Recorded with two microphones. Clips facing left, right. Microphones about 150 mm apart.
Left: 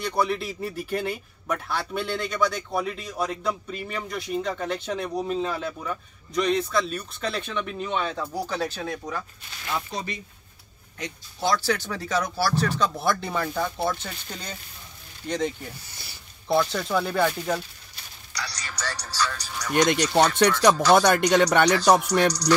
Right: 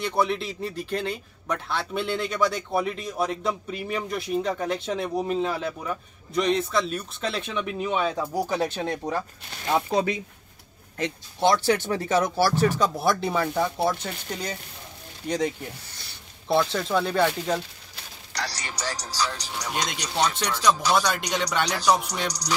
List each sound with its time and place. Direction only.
0.0 s speech: centre (ahead or behind); by 9.2 s 25° right (ahead or behind)
9.8 s speech: 60° right (ahead or behind)
11.3 s speech: 20° right (ahead or behind)
15.9 s a sound: 10° left (ahead or behind)
16.4 s speech: centre (ahead or behind)
18.5 s music: 25° right (ahead or behind)
18.8 s speech: 15° right (ahead or behind)
19.9 s speech: 55° left (ahead or behind)